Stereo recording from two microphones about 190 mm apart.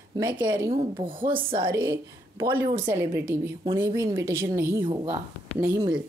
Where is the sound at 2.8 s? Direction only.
10° right (ahead or behind).